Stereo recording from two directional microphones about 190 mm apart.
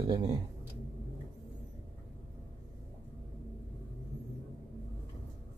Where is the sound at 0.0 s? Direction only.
20° right (ahead or behind).